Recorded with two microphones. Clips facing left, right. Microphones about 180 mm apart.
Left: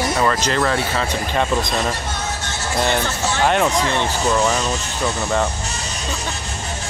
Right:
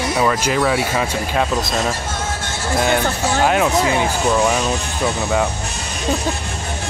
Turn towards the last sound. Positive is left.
turn(degrees=0)  # may be behind; listen again after turning